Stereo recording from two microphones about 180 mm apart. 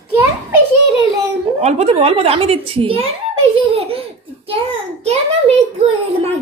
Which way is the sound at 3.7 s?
30° right (ahead or behind).